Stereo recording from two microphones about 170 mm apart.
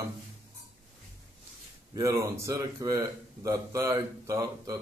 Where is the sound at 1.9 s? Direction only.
20° right (ahead or behind).